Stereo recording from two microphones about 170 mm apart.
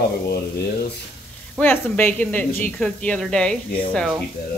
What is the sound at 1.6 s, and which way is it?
Speech, 10° left (ahead or behind).